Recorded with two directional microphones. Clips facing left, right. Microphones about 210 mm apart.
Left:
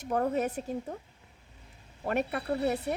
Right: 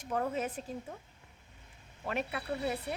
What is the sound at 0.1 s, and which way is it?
Speech, 40° left (ahead or behind).